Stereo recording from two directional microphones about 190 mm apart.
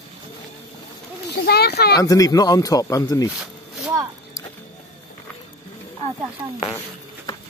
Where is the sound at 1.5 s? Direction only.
60° left (ahead or behind).